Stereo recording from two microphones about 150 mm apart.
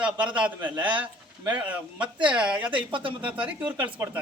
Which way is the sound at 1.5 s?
10° right (ahead or behind).